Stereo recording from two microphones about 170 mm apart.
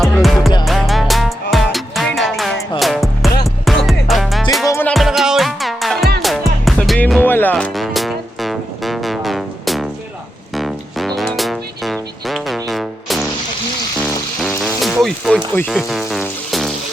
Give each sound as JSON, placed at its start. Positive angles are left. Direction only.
{"t": 0.2, "sound": "music", "side_deg": 0}
{"t": 4.6, "sound": "music", "side_deg": 15}
{"t": 4.9, "sound": "music", "side_deg": 0}
{"t": 7.5, "sound": "music", "side_deg": 0}
{"t": 14.6, "sound": "music", "side_deg": 0}
{"t": 15.5, "sound": "speech", "side_deg": 5}
{"t": 16.5, "sound": "music", "side_deg": 0}